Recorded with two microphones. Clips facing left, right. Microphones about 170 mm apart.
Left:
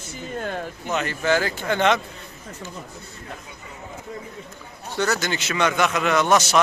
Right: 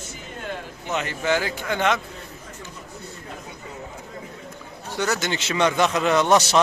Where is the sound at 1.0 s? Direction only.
15° right (ahead or behind).